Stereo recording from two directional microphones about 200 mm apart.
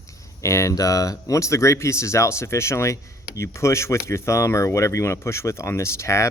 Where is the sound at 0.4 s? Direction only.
15° left (ahead or behind).